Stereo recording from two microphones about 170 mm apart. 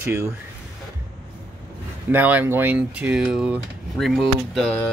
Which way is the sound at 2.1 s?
10° right (ahead or behind).